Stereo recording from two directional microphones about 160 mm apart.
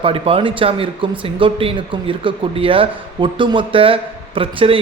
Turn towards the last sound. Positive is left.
turn(degrees=-35)  # may be behind; listen again after turning